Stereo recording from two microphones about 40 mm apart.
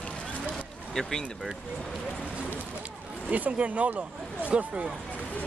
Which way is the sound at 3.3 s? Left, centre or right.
Right.